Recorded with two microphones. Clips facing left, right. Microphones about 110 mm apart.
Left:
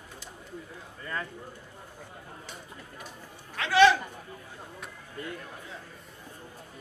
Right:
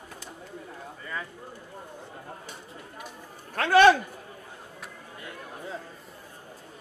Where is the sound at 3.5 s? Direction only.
50° right (ahead or behind).